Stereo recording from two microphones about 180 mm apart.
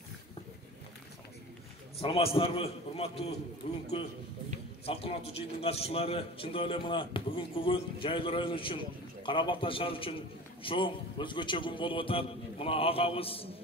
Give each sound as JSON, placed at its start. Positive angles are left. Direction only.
{"t": 2.0, "sound": "a man's voice", "side_deg": 30}
{"t": 4.8, "sound": "a man's voice", "side_deg": 30}